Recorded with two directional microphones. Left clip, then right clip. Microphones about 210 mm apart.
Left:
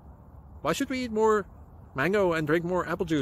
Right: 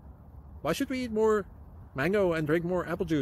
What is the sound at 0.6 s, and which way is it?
Speech, centre (ahead or behind).